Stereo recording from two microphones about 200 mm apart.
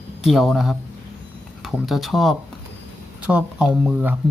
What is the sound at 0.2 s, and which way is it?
Speech, centre (ahead or behind).